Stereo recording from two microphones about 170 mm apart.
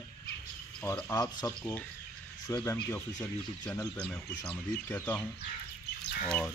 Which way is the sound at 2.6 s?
10° left (ahead or behind).